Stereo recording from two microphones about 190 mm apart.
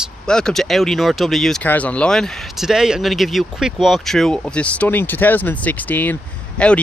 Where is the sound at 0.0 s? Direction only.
5° left (ahead or behind).